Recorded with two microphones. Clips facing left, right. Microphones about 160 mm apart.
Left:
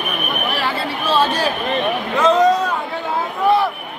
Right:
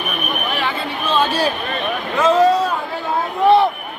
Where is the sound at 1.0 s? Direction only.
5° left (ahead or behind).